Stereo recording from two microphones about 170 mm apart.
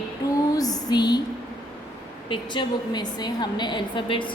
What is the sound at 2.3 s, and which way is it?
A woman's voice, 25° left (ahead or behind).